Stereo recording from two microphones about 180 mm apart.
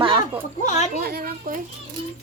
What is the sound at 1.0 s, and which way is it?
Speech, 55° right (ahead or behind).